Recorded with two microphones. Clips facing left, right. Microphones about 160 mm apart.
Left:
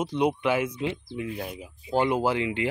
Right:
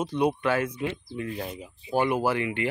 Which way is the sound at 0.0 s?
15° left (ahead or behind).